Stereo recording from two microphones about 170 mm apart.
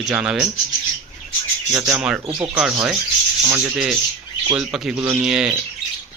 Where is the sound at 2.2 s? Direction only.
15° right (ahead or behind).